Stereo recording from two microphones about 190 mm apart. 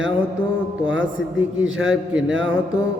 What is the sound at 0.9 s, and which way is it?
Speech, 75° right (ahead or behind).